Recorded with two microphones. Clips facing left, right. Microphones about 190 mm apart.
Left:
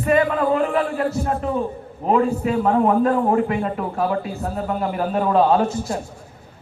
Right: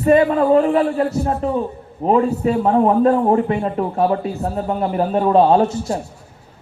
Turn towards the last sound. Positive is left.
turn(degrees=-30)  # may be behind; listen again after turning